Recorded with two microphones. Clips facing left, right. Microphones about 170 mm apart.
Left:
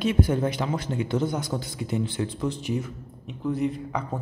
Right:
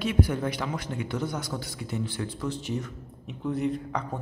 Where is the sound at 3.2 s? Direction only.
Centre (ahead or behind).